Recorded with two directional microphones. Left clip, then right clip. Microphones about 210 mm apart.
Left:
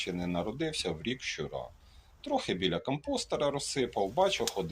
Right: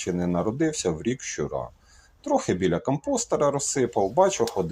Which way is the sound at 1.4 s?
40° right (ahead or behind).